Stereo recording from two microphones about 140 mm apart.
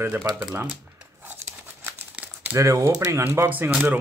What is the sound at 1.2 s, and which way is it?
Speech, 15° right (ahead or behind).